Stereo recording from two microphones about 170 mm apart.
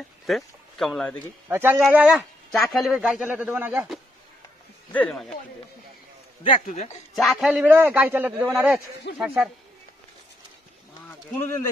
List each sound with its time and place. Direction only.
0.3 s speech: centre (ahead or behind)
1.5 s a man's voice: 15° right (ahead or behind)
4.9 s a man's voice: 5° left (ahead or behind)
6.7 s speech: 40° left (ahead or behind)
7.2 s a man's voice: centre (ahead or behind)
11.1 s speech: 15° left (ahead or behind)